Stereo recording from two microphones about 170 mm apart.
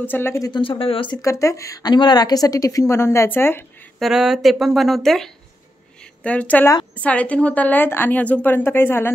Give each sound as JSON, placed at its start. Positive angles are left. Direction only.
{"t": 0.0, "sound": "a woman's voice", "side_deg": 10}
{"t": 0.5, "sound": "speech", "side_deg": 30}
{"t": 1.2, "sound": "a woman's voice", "side_deg": 20}
{"t": 4.0, "sound": "a woman's voice", "side_deg": 0}